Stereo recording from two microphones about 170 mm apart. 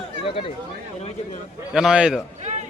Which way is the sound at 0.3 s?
30° left (ahead or behind).